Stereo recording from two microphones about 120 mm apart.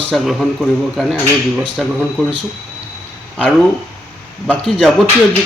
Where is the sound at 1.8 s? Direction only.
Centre (ahead or behind).